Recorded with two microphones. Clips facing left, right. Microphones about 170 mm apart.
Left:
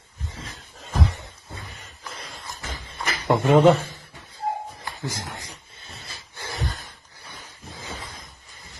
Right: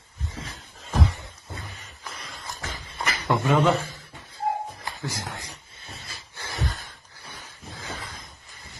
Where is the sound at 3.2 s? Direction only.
20° left (ahead or behind).